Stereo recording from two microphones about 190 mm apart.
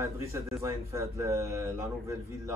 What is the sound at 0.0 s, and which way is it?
A man's voice, 15° right (ahead or behind).